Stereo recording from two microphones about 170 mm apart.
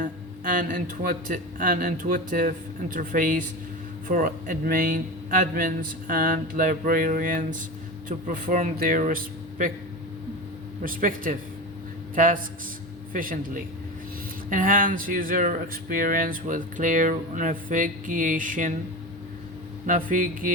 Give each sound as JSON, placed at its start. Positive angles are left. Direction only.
{"t": 0.0, "sound": "speech", "side_deg": -50}
{"t": 10.8, "sound": "a man's voice", "side_deg": -55}
{"t": 19.9, "sound": "speech", "side_deg": -55}